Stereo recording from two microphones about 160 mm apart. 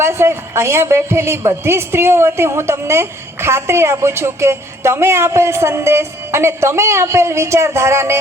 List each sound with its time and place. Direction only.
0.0 s a woman's voice: 15° right (ahead or behind)